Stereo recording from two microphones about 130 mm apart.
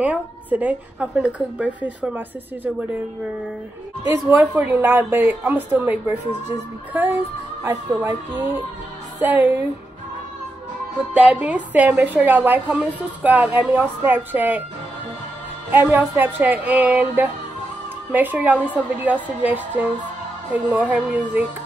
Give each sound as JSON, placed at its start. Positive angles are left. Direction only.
{"t": 0.0, "sound": "a woman's voice", "side_deg": -10}
{"t": 4.1, "sound": "a woman's voice", "side_deg": -20}
{"t": 11.1, "sound": "a woman's voice", "side_deg": -5}
{"t": 15.7, "sound": "a woman's voice", "side_deg": -15}